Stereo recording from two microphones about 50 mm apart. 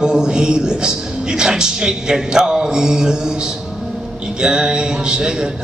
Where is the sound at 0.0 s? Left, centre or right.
Centre.